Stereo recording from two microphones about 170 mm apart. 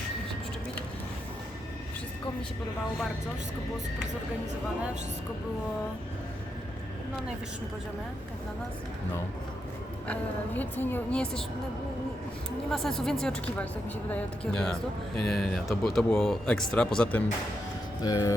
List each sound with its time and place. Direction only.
10.1 s a woman's voice: 10° left (ahead or behind)
12.7 s speech: centre (ahead or behind)
18.0 s speech: 20° left (ahead or behind)